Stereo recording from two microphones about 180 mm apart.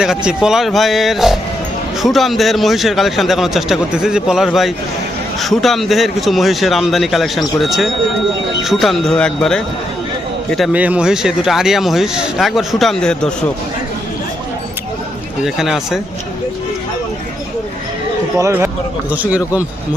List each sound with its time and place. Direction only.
0.4 s speech: centre (ahead or behind)
15.4 s speech: centre (ahead or behind)
18.3 s speech: 15° right (ahead or behind)